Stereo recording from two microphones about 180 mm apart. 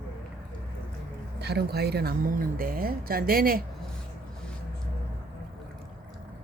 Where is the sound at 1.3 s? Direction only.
65° right (ahead or behind).